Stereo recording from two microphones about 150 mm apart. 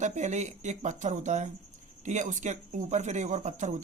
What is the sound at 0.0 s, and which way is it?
Speech, 50° right (ahead or behind).